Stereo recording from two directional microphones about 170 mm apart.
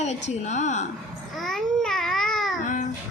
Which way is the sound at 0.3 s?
45° left (ahead or behind).